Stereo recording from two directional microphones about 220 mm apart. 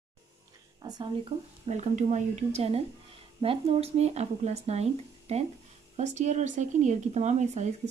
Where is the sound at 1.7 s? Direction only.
30° right (ahead or behind).